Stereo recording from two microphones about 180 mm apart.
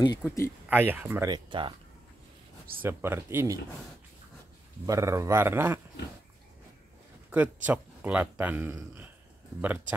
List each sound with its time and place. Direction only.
0.2 s speech: 15° left (ahead or behind)
0.7 s speech: 10° right (ahead or behind)
1.3 s speech: 25° right (ahead or behind)
2.8 s speech: 15° right (ahead or behind)
4.8 s speech: 15° right (ahead or behind)
7.2 s speech: 10° right (ahead or behind)